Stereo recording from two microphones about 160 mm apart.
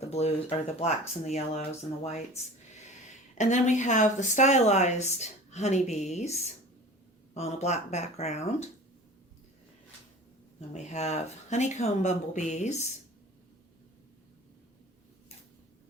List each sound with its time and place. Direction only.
0.0 s speech: 40° left (ahead or behind)
10.7 s speech: 45° left (ahead or behind)